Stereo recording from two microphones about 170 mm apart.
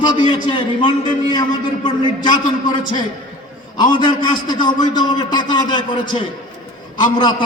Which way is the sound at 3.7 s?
25° left (ahead or behind).